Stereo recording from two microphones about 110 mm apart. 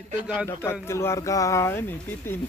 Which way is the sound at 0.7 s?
25° left (ahead or behind).